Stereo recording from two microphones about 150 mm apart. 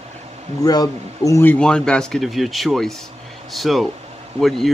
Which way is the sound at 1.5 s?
5° left (ahead or behind).